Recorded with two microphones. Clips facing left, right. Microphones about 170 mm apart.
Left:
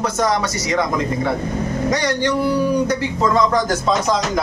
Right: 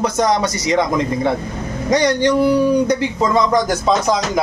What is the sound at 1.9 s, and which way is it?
A man's voice, 15° right (ahead or behind).